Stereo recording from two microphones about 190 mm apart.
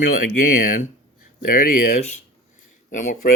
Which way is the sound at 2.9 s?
40° left (ahead or behind).